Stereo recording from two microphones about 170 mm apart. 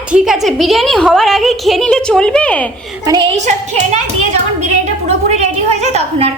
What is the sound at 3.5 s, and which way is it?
Speech, 45° right (ahead or behind).